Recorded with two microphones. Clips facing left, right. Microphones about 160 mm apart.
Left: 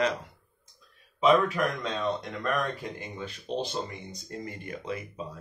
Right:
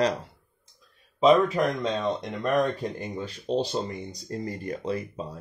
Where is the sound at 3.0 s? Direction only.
35° right (ahead or behind).